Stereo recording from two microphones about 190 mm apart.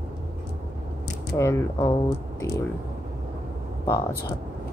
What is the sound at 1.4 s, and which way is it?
Speech, 15° left (ahead or behind).